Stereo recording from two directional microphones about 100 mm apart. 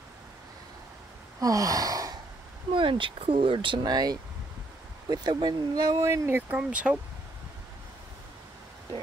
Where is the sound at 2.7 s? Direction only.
55° right (ahead or behind).